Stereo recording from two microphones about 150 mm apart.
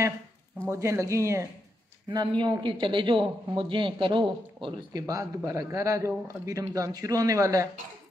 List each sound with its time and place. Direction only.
0.6 s a man's voice: 20° right (ahead or behind)
2.0 s speech: 30° right (ahead or behind)
5.0 s a man's voice: 20° right (ahead or behind)